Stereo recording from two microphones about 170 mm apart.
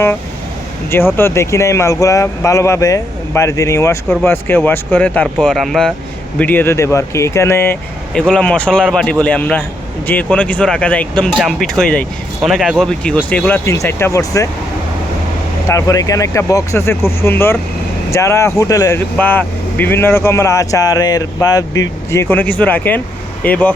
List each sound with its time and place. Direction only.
0.9 s speech: 15° left (ahead or behind)
15.7 s speech: 20° left (ahead or behind)